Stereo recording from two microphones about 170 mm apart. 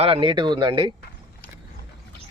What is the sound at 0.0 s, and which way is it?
Speech, 30° right (ahead or behind).